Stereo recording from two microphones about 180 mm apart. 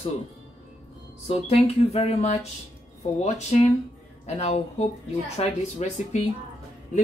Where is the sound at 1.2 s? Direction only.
35° left (ahead or behind).